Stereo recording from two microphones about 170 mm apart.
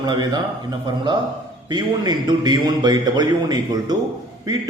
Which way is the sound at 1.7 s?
25° right (ahead or behind).